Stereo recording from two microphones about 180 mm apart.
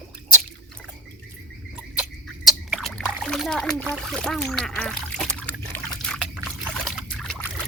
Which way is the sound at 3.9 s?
Centre (ahead or behind).